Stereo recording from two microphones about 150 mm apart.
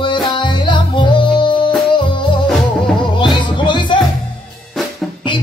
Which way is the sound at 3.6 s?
35° left (ahead or behind).